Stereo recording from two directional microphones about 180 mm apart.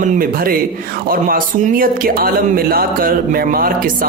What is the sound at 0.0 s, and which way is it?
Speech, 50° right (ahead or behind).